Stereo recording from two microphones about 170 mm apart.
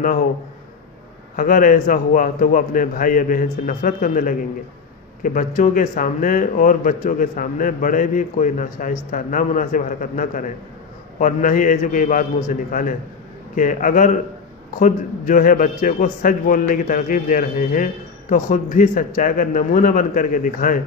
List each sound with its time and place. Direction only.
1.3 s speech: 55° left (ahead or behind)